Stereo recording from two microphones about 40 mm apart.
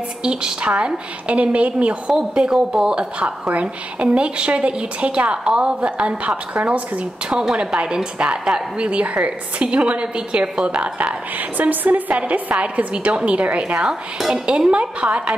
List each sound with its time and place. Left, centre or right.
0.2 s a woman's voice: right
4.0 s a woman's voice: right
6.5 s a woman's voice: right
7.5 s a woman's voice: right
8.8 s a woman's voice: right
11.3 s a woman's voice: right
12.2 s a woman's voice: right
14.2 s dishes: centre
14.8 s a woman's voice: right